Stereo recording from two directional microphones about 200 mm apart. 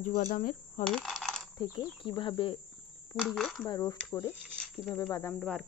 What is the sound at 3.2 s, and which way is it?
Speech, centre (ahead or behind).